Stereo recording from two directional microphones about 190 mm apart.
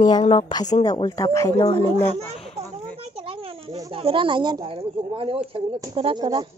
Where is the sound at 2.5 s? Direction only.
30° right (ahead or behind).